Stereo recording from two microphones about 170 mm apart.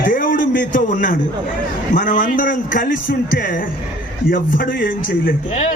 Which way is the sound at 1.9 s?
50° left (ahead or behind).